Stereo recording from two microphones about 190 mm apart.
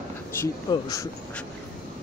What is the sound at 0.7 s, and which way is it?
Speech, 20° left (ahead or behind).